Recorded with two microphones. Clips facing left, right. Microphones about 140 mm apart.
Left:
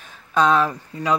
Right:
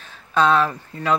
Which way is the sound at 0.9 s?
15° left (ahead or behind).